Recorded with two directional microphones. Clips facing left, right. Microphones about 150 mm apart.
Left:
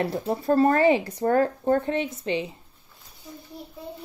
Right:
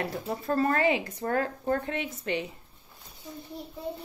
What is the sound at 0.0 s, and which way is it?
Speech, 35° left (ahead or behind).